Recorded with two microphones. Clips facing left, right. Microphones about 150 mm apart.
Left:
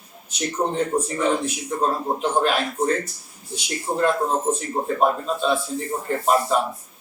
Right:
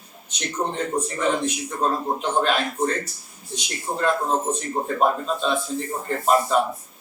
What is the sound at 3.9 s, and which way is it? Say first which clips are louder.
Speech: left 4 dB; 15° left (ahead or behind).